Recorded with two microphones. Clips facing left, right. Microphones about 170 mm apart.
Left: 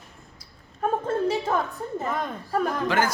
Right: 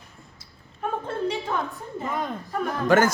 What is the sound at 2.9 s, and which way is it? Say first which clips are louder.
Speech: right 7 dB; 45° right (ahead or behind).